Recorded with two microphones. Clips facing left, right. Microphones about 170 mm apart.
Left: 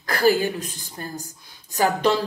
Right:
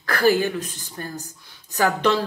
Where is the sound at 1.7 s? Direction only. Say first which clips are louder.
Even; 15° left (ahead or behind).